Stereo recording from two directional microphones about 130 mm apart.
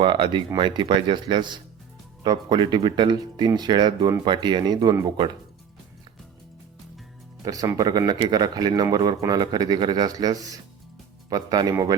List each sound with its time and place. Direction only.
0.0 s speech: 40° right (ahead or behind)
7.4 s speech: 25° right (ahead or behind)